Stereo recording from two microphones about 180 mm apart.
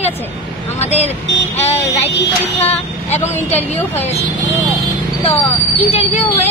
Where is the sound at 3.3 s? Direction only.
35° left (ahead or behind).